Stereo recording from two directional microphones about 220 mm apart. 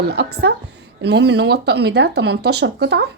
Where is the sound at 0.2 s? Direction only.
50° right (ahead or behind).